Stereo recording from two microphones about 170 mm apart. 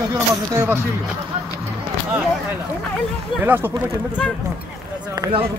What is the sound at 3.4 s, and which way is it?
Speech, 10° right (ahead or behind).